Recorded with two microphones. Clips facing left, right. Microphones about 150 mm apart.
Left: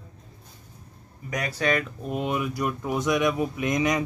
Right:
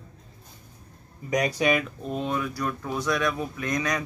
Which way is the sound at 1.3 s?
15° right (ahead or behind).